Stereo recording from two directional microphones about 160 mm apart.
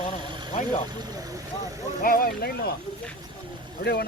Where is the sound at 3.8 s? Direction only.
90° left.